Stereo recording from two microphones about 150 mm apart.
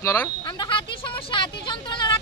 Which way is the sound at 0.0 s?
20° left (ahead or behind).